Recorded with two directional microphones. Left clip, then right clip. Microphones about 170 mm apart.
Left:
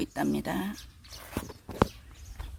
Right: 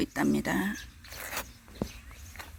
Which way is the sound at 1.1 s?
65° right (ahead or behind).